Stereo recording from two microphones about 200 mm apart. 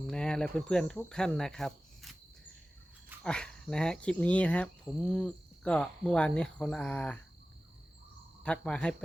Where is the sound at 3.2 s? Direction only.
5° left (ahead or behind).